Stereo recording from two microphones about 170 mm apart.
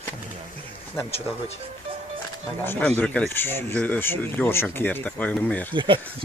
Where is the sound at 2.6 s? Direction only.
10° left (ahead or behind).